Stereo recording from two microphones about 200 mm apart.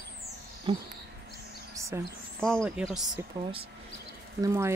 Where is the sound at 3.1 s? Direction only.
25° right (ahead or behind).